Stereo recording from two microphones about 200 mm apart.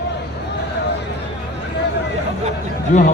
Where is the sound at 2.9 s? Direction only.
35° left (ahead or behind).